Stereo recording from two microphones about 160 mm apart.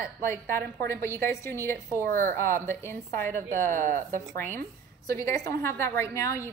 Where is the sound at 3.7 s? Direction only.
55° right (ahead or behind).